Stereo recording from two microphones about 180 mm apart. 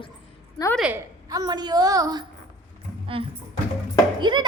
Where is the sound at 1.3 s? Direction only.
20° right (ahead or behind).